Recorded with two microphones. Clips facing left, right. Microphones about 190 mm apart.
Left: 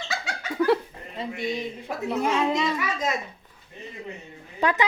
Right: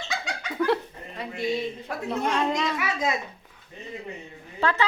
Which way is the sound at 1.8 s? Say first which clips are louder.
Left 2 dB; 5° left (ahead or behind).